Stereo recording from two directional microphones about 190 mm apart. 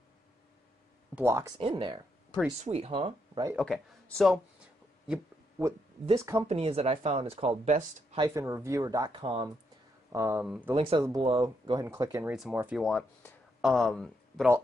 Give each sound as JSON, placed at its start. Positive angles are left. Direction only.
{"t": 1.1, "sound": "speech", "side_deg": -15}
{"t": 1.6, "sound": "speech", "side_deg": -25}
{"t": 3.5, "sound": "speech", "side_deg": 0}
{"t": 6.1, "sound": "speech", "side_deg": -15}
{"t": 6.4, "sound": "speech", "side_deg": -30}
{"t": 8.2, "sound": "speech", "side_deg": -15}
{"t": 10.1, "sound": "speech", "side_deg": -10}
{"t": 10.7, "sound": "speech", "side_deg": -20}
{"t": 12.3, "sound": "speech", "side_deg": -5}